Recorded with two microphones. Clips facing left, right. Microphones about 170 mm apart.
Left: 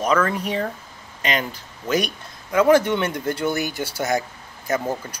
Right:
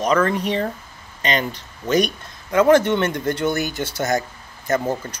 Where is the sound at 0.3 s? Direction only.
5° left (ahead or behind).